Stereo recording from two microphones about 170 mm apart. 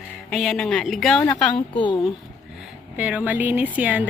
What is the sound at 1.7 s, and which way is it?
Speech, 30° left (ahead or behind).